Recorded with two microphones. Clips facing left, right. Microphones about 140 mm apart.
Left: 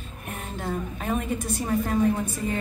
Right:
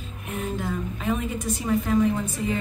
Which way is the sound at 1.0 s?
45° left (ahead or behind).